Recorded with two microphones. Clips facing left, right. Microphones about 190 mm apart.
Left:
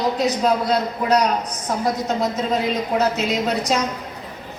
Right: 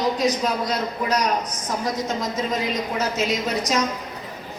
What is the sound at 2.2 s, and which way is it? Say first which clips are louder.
A woman's voice: left 4 dB; 65° left (ahead or behind).